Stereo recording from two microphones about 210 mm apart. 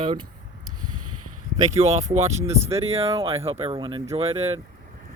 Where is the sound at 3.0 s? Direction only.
25° right (ahead or behind).